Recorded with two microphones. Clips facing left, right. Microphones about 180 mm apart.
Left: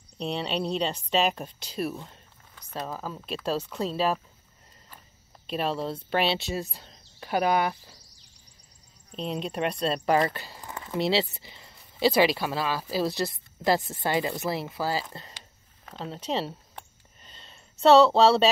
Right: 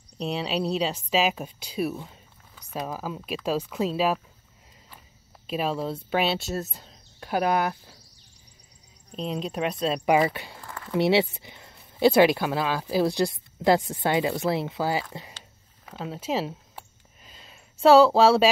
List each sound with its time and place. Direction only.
0.2 s speech: 5° right (ahead or behind)
5.5 s speech: 5° right (ahead or behind)
9.1 s speech: centre (ahead or behind)
10.6 s a sound: 20° left (ahead or behind)
12.4 s speech: 15° right (ahead or behind)
15.8 s a sound: 5° right (ahead or behind)